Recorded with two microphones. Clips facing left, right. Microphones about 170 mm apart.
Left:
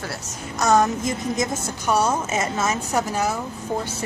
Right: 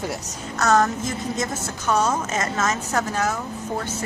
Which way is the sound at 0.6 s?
10° left (ahead or behind).